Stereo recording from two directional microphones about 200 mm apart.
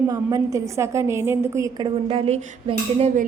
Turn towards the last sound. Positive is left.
turn(degrees=-30)  # may be behind; listen again after turning